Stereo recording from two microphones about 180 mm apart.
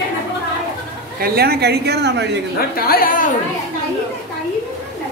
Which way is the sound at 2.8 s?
55° left (ahead or behind).